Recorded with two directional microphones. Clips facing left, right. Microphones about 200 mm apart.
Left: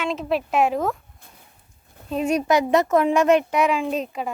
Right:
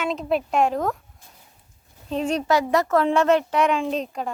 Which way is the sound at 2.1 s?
10° left (ahead or behind).